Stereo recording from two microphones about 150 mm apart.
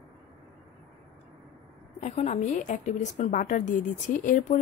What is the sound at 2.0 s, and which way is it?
A woman's voice, 50° left (ahead or behind).